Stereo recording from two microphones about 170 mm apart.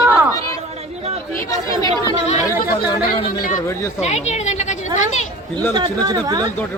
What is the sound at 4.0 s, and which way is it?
Speech, 40° left (ahead or behind).